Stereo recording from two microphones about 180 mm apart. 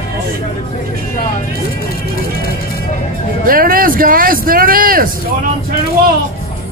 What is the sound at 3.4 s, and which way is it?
Vehicle, 55° right (ahead or behind).